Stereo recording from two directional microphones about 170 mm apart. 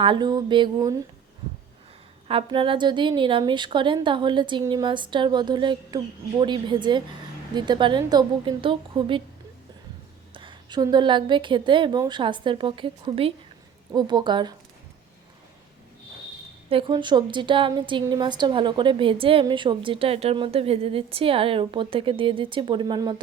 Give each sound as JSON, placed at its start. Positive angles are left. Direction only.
{"t": 0.0, "sound": "a woman's voice", "side_deg": -25}
{"t": 2.2, "sound": "a woman's voice", "side_deg": -30}
{"t": 10.3, "sound": "a woman's voice", "side_deg": -25}
{"t": 16.6, "sound": "a woman's voice", "side_deg": -30}